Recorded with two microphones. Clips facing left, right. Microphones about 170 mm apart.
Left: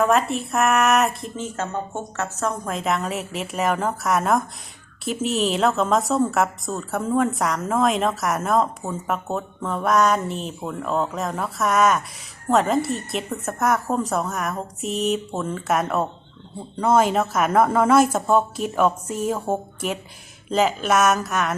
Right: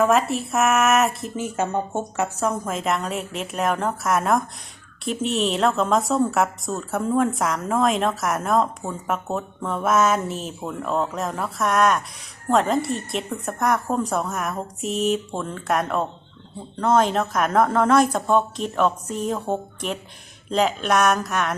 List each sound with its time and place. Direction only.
0.0 s a woman's voice: centre (ahead or behind)
1.5 s a woman's voice: 15° right (ahead or behind); by 21.5 s centre (ahead or behind)